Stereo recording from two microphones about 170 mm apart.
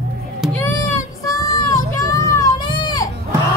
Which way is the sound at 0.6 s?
15° left (ahead or behind).